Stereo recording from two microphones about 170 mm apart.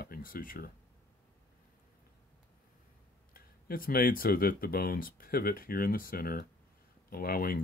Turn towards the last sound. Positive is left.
turn(degrees=60)  # may be behind; listen again after turning